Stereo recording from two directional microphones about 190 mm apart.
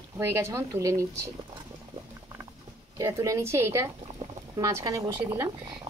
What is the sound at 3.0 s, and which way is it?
Speech, 15° right (ahead or behind).